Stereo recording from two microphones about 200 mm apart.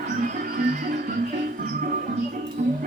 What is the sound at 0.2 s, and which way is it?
Music, 40° right (ahead or behind).